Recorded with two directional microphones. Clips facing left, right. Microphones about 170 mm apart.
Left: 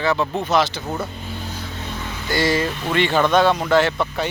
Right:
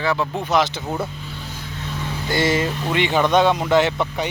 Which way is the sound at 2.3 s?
20° right (ahead or behind).